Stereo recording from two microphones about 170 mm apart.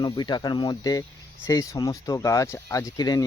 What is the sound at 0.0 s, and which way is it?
Speech, 25° left (ahead or behind).